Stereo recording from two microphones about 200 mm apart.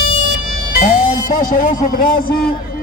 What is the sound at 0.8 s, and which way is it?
Music, 45° left (ahead or behind).